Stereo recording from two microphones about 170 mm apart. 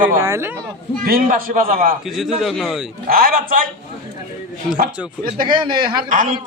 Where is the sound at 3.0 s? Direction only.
60° right (ahead or behind).